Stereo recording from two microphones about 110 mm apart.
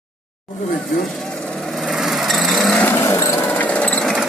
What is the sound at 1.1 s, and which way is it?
Vehicle, 5° left (ahead or behind).